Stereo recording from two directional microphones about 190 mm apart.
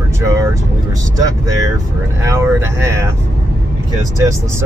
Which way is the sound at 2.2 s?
15° right (ahead or behind).